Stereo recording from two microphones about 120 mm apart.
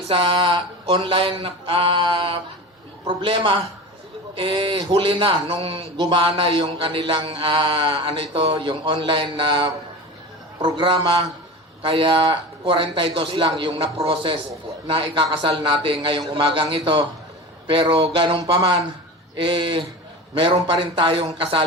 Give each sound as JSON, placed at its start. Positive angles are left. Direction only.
{"t": 0.0, "sound": "mantra", "side_deg": -50}
{"t": 10.6, "sound": "a man's voice", "side_deg": -45}
{"t": 11.8, "sound": "mantra", "side_deg": -45}
{"t": 20.3, "sound": "a man's voice", "side_deg": -40}
{"t": 20.7, "sound": "mantra", "side_deg": -45}